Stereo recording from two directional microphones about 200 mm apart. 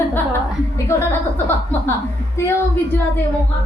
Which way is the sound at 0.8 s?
10° left (ahead or behind).